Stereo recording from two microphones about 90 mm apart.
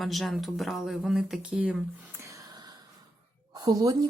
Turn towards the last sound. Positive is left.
turn(degrees=-40)  # may be behind; listen again after turning